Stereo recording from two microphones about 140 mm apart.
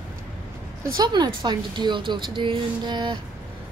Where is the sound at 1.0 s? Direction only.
30° right (ahead or behind).